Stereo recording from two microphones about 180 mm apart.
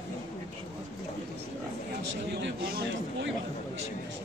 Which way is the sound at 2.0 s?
75° right (ahead or behind).